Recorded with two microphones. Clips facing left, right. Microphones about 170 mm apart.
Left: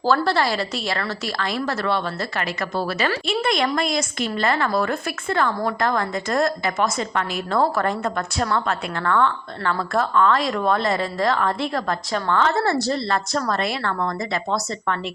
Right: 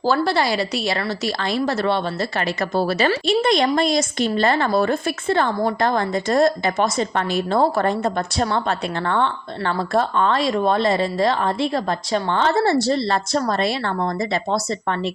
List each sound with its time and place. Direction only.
0.0 s a woman's voice: 15° right (ahead or behind)